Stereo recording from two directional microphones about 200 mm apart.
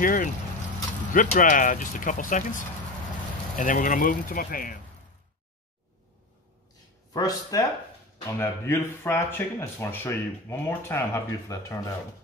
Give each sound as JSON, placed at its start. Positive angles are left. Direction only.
{"t": 0.0, "sound": "speech", "side_deg": 45}
{"t": 7.2, "sound": "speech", "side_deg": 20}